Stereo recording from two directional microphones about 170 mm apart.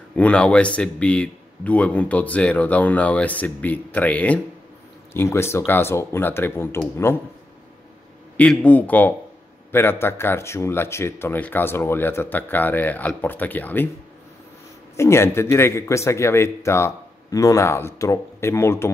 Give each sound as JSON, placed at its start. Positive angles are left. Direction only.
{"t": 0.1, "sound": "speech", "side_deg": 5}
{"t": 8.4, "sound": "speech", "side_deg": 10}
{"t": 15.0, "sound": "speech", "side_deg": 15}